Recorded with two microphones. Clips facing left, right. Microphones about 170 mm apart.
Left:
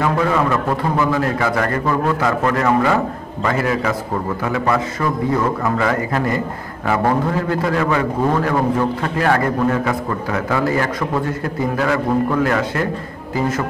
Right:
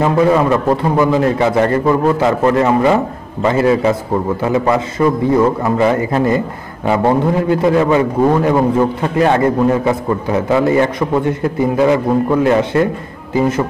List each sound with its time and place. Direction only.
0.0 s a man's voice: 25° right (ahead or behind)